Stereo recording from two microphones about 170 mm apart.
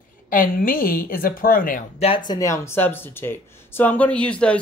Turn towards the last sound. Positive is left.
turn(degrees=5)  # may be behind; listen again after turning